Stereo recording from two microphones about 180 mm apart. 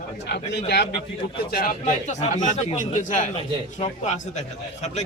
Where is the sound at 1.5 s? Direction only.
55° left (ahead or behind).